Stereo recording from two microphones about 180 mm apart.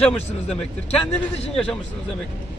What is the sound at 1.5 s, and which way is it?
Speech, centre (ahead or behind).